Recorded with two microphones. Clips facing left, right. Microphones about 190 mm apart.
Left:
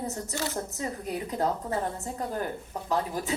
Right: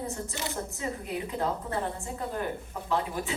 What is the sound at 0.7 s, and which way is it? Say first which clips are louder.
Speech: left 1 dB; 40° left (ahead or behind).